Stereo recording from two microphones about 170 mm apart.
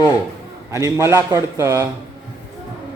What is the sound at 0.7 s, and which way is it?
A man's voice, 15° right (ahead or behind).